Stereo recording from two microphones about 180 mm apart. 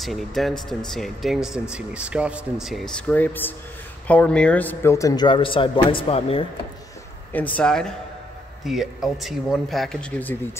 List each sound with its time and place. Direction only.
0.0 s speech: centre (ahead or behind); by 6.4 s 35° left (ahead or behind)
7.3 s speech: 10° left (ahead or behind)